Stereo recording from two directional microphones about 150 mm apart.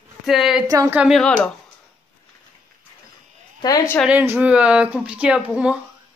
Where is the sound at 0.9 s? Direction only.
Centre (ahead or behind).